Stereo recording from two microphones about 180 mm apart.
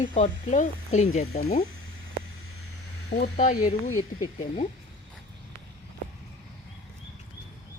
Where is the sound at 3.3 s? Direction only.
45° left (ahead or behind).